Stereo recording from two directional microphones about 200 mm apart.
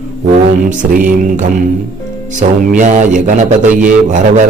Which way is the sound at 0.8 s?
40° right (ahead or behind).